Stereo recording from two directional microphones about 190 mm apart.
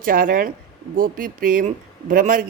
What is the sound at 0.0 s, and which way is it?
Speech, 45° right (ahead or behind).